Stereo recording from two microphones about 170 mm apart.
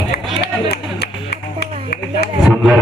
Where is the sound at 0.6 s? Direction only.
70° left (ahead or behind).